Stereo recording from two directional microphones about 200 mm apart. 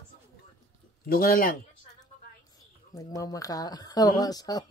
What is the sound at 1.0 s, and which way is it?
Speech, 45° left (ahead or behind).